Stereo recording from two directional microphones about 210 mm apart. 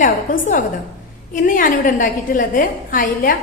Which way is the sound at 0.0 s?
40° left (ahead or behind).